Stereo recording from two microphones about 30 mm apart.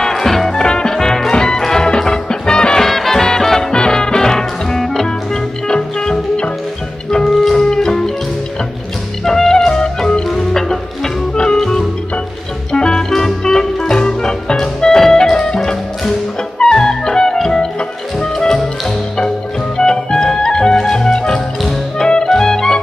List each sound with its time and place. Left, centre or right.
0.0 s music: centre
0.6 s music: left
2.8 s music: centre
3.7 s music: left
5.8 s music: left
9.2 s music: centre; by 13.0 s left
13.1 s music: centre
14.9 s music: centre
16.7 s music: left
19.8 s music: left